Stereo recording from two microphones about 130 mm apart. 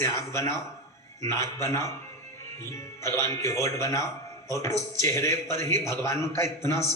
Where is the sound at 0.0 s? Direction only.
25° left (ahead or behind).